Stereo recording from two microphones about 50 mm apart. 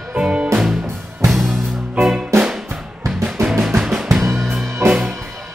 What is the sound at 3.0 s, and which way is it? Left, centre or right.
Music, right.